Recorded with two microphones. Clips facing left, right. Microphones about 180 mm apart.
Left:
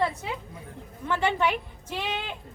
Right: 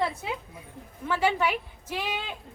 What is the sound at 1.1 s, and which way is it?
A woman's voice, 5° right (ahead or behind).